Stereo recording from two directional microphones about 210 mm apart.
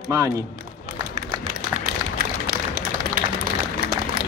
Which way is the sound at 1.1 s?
45° right (ahead or behind).